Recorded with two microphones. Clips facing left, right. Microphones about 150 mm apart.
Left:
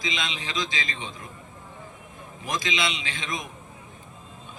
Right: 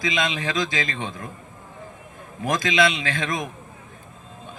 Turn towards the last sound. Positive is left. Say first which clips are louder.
# right 7 dB
turn(degrees=-55)  # may be behind; listen again after turning